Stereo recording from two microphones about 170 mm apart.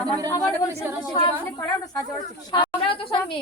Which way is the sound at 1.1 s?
25° left (ahead or behind).